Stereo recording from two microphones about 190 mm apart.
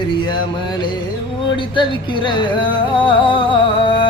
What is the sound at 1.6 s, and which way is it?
Music, 25° left (ahead or behind).